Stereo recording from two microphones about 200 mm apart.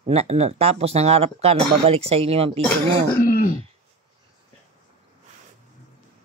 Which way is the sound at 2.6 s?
10° left (ahead or behind).